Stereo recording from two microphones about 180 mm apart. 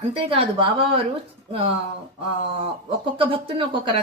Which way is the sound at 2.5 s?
30° right (ahead or behind).